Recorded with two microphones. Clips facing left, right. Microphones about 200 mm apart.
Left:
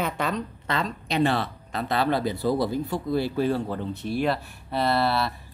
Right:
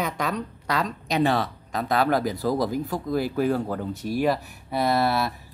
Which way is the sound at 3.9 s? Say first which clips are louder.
Right 1 dB; 40° right (ahead or behind).